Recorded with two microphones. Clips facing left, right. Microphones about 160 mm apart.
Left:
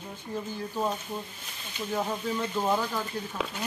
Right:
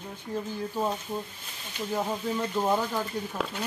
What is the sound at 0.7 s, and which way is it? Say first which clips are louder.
A man's voice: even; 10° right (ahead or behind).